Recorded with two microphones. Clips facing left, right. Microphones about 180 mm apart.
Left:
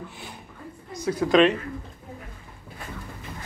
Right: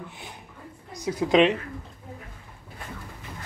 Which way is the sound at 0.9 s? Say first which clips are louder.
Left 1 dB; 15° right (ahead or behind).